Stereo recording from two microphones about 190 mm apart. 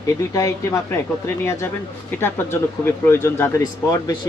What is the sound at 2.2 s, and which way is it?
Speech, 10° left (ahead or behind).